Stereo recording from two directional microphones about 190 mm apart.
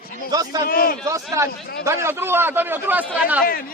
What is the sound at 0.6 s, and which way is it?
Speech, 50° left (ahead or behind).